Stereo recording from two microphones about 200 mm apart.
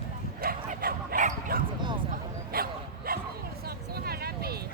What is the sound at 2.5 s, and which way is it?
Dog, 50° right (ahead or behind).